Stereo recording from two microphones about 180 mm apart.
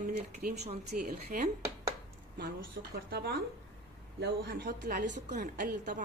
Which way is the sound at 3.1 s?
65° right (ahead or behind).